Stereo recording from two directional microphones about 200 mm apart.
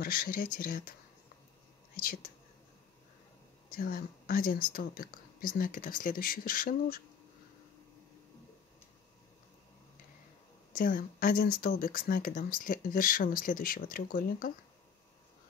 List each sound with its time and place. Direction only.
0.0 s speech: 45° left (ahead or behind)
3.7 s speech: 45° left (ahead or behind)
10.8 s speech: 40° left (ahead or behind)